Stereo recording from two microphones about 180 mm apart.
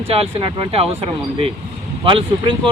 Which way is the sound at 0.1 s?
30° right (ahead or behind).